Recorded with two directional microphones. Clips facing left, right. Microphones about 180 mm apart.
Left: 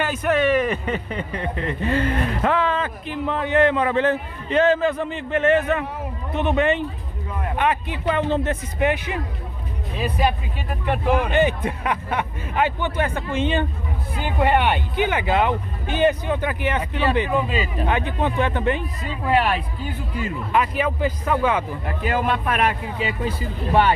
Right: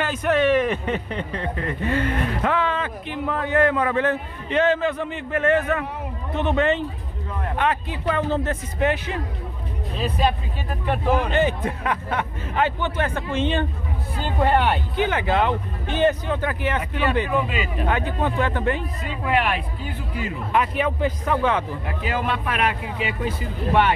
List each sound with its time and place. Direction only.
0.0 s speech: 5° left (ahead or behind)
1.3 s speech: 20° left (ahead or behind); by 3.2 s 40° left (ahead or behind)
3.3 s a man's voice: 20° left (ahead or behind)
17.8 s a man's voice: 20° left (ahead or behind)
19.2 s speech: 35° left (ahead or behind)
20.5 s speech: centre (ahead or behind)
21.8 s speech: 50° left (ahead or behind)